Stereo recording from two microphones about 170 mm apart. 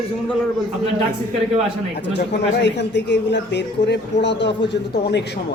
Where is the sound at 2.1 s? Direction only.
90° left.